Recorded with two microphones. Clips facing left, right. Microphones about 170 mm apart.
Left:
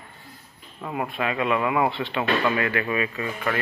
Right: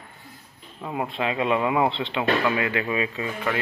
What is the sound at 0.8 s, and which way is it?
Speech, 20° right (ahead or behind).